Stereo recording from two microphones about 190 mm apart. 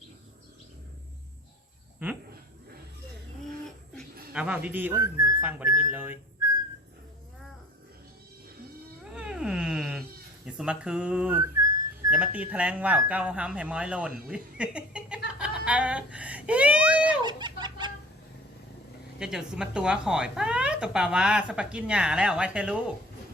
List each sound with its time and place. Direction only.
2.0 s speech: 10° right (ahead or behind)
4.3 s speech: 5° right (ahead or behind)
9.1 s wail: 5° right (ahead or behind)
10.4 s speech: 5° right (ahead or behind)
17.2 s chicken: 25° right (ahead or behind)
19.2 s speech: 5° right (ahead or behind)